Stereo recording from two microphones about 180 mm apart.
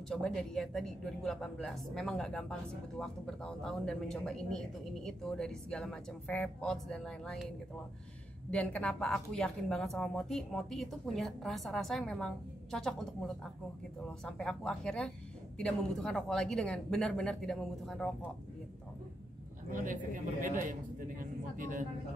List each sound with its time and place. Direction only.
0.1 s a woman's voice: 5° left (ahead or behind)
19.7 s speech: 45° right (ahead or behind)